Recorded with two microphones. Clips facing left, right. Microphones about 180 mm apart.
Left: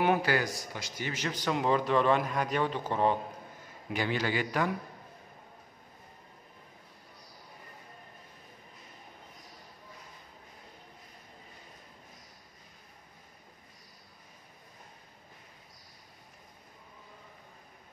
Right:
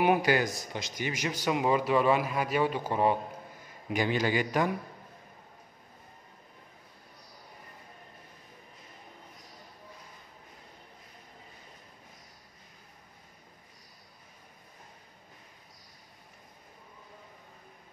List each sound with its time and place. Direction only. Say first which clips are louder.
0.0 s speech: right 2 dB; 15° right (ahead or behind)